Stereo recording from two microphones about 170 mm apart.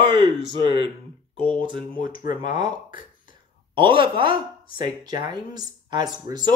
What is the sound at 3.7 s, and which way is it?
Speech, 30° right (ahead or behind).